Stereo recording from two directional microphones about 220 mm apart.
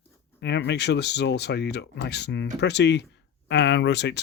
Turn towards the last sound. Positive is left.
turn(degrees=50)  # may be behind; listen again after turning